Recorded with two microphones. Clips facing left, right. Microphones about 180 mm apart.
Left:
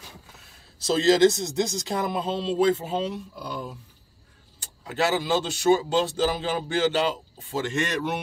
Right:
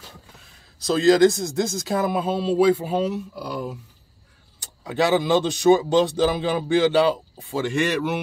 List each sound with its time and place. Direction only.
0.8 s speech: centre (ahead or behind)
4.9 s speech: 15° right (ahead or behind)